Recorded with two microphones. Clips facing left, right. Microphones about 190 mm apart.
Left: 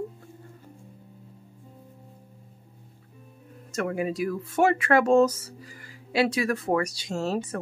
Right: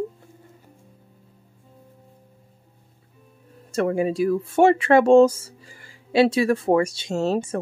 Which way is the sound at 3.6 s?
30° right (ahead or behind).